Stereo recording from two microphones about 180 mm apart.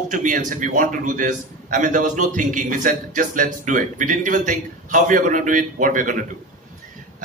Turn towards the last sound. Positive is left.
turn(degrees=-50)  # may be behind; listen again after turning